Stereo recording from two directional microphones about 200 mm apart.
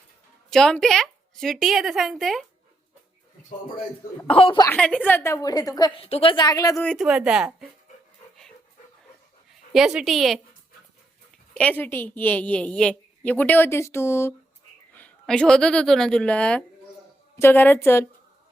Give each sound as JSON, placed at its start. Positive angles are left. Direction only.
{"t": 0.5, "sound": "a woman's voice", "side_deg": 5}
{"t": 4.3, "sound": "speech", "side_deg": 25}
{"t": 4.7, "sound": "a woman's voice", "side_deg": 5}
{"t": 6.8, "sound": "a woman's voice", "side_deg": 0}
{"t": 9.5, "sound": "speech", "side_deg": 0}
{"t": 11.5, "sound": "a woman's voice", "side_deg": 5}